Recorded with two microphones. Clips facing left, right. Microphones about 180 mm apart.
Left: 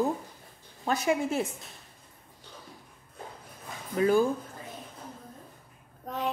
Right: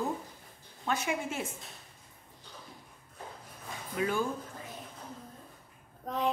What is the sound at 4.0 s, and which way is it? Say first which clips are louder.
Speech: left 8 dB; 40° left (ahead or behind).